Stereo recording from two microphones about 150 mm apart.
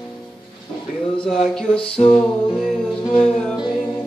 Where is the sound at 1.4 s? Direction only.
40° left (ahead or behind).